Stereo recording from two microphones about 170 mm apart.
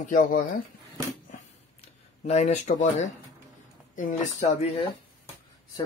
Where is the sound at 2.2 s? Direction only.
45° left (ahead or behind).